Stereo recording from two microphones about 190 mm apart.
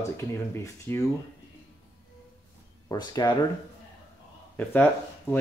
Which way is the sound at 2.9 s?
20° left (ahead or behind).